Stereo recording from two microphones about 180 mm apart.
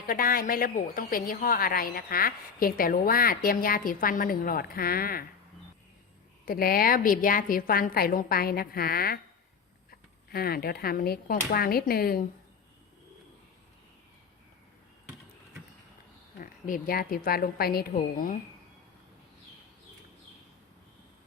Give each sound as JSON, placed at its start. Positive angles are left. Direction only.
{"t": 0.1, "sound": "a woman's voice", "side_deg": 50}
{"t": 6.4, "sound": "a woman's voice", "side_deg": 55}
{"t": 16.4, "sound": "a woman's voice", "side_deg": 50}